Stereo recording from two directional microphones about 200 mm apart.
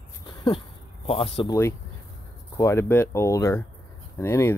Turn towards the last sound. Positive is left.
turn(degrees=10)  # may be behind; listen again after turning